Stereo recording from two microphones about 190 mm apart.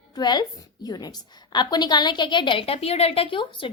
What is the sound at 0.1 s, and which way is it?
A woman's voice, 20° left (ahead or behind).